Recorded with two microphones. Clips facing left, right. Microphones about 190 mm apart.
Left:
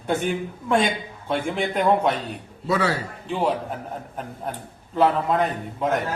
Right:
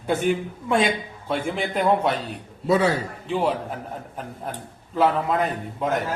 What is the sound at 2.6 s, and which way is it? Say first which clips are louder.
Speech: right 3 dB; 20° right (ahead or behind).